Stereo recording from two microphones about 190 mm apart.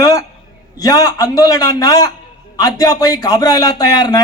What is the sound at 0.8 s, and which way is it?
A man's voice, 20° left (ahead or behind).